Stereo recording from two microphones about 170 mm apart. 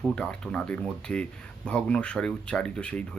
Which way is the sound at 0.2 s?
5° left (ahead or behind).